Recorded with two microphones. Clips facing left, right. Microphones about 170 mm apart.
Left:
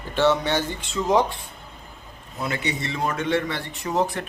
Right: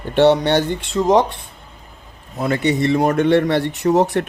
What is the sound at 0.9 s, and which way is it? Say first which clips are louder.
Speech: right 6 dB; 35° right (ahead or behind).